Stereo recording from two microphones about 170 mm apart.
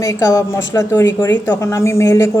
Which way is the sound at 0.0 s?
20° left (ahead or behind).